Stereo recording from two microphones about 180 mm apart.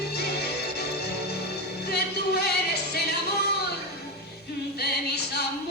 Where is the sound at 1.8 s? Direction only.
65° left (ahead or behind).